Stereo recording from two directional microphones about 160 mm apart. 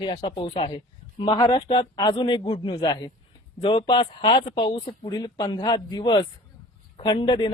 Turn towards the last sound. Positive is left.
turn(degrees=25)  # may be behind; listen again after turning